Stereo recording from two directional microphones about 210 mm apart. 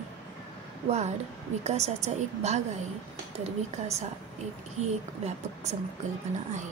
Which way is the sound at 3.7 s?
30° right (ahead or behind).